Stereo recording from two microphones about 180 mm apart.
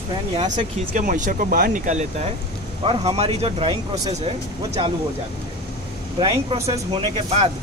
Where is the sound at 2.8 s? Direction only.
30° right (ahead or behind).